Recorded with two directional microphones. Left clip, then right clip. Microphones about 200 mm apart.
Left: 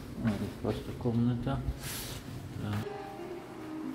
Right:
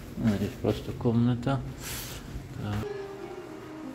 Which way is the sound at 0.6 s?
35° right (ahead or behind).